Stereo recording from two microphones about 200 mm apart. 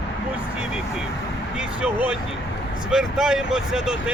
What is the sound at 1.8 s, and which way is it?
Speech, 5° right (ahead or behind).